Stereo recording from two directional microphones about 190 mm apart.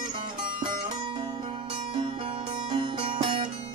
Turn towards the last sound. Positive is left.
turn(degrees=-25)  # may be behind; listen again after turning